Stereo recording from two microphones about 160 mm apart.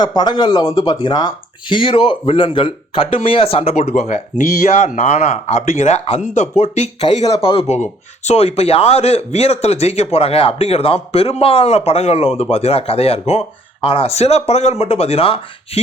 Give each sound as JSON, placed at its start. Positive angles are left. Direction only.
{"t": 0.0, "sound": "speech", "side_deg": 25}